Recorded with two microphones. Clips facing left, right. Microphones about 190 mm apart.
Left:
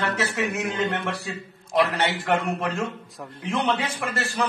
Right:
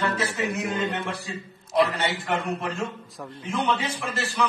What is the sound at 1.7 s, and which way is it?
A man's voice, 70° left (ahead or behind).